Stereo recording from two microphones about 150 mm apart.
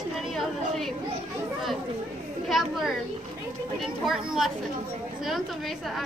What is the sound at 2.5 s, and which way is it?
A woman's voice, centre (ahead or behind).